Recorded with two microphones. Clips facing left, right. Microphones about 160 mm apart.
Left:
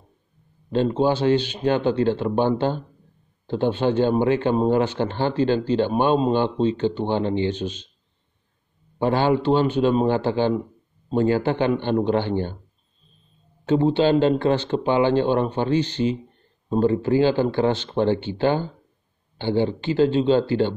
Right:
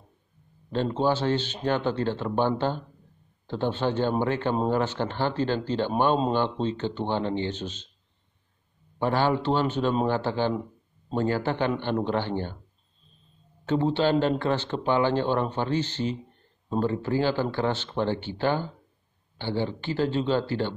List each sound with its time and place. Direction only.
0.7 s speech: 15° left (ahead or behind)
8.9 s speech: 20° left (ahead or behind)
13.7 s speech: 15° left (ahead or behind)